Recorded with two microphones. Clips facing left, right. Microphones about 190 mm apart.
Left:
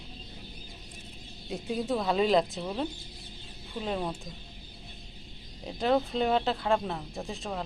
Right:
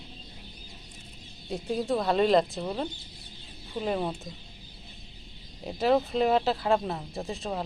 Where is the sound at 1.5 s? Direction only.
Centre (ahead or behind).